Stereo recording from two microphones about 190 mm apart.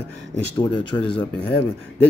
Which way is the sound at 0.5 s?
25° left (ahead or behind).